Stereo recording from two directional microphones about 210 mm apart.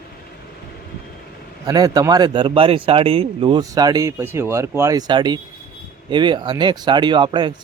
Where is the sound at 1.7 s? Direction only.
15° right (ahead or behind).